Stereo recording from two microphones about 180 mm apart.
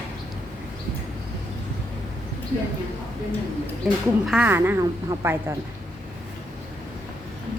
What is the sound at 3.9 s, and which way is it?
Speech, 5° right (ahead or behind).